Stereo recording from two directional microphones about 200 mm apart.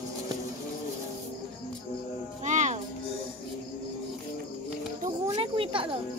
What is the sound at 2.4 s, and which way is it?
Music, 35° right (ahead or behind).